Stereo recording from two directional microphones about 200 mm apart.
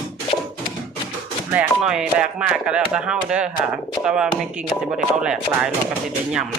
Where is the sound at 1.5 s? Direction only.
5° right (ahead or behind).